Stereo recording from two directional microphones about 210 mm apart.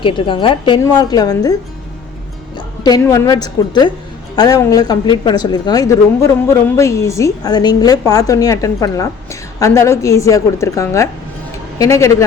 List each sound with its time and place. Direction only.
0.0 s a woman's voice: 25° left (ahead or behind)
2.6 s a woman's voice: 20° left (ahead or behind)